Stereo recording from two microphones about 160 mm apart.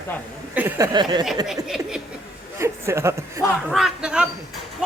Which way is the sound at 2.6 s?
15° right (ahead or behind).